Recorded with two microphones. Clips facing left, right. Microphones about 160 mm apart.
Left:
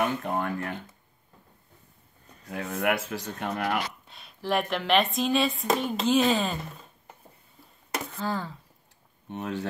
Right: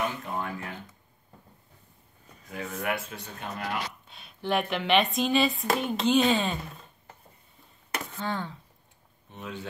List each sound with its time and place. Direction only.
0.2 s speech: 60° left (ahead or behind)
2.5 s speech: 60° left (ahead or behind)
4.1 s speech: centre (ahead or behind)
8.2 s speech: 5° left (ahead or behind)
9.3 s speech: 75° left (ahead or behind)